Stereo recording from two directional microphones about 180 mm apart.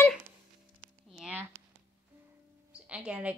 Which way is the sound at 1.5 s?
15° right (ahead or behind).